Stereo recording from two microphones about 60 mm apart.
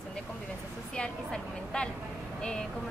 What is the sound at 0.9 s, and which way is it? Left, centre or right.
Speech, centre.